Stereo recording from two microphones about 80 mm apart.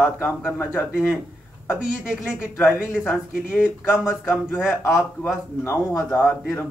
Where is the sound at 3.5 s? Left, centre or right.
Centre.